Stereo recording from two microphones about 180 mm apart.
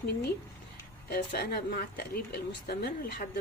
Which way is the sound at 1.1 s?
55° left (ahead or behind).